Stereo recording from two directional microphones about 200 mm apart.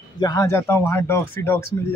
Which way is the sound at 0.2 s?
15° left (ahead or behind).